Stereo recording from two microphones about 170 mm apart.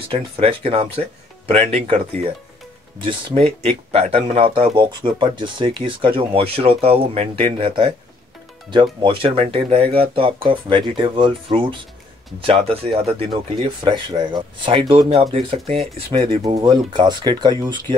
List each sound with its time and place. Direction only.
0.1 s speech: 30° right (ahead or behind)
16.4 s speech: 25° right (ahead or behind)